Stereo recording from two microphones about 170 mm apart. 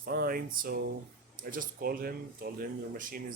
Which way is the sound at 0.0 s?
65° right (ahead or behind).